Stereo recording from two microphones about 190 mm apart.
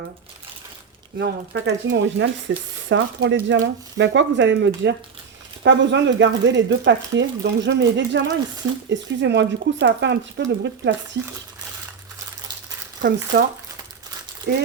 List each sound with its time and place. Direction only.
1.2 s speech: 65° right (ahead or behind)
13.3 s speech: 55° right (ahead or behind)